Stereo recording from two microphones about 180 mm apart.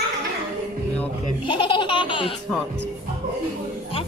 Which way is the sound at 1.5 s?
25° left (ahead or behind).